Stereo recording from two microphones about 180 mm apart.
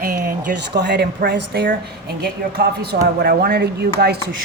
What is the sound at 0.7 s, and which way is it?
Speech, 70° right (ahead or behind).